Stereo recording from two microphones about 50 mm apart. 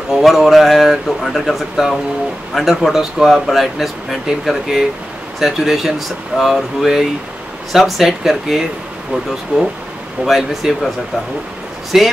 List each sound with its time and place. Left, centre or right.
0.2 s a man's voice: centre
10.2 s a man's voice: centre
11.9 s speech: centre